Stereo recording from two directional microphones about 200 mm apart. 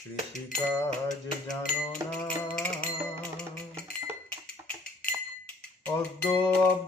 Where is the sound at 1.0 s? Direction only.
5° left (ahead or behind).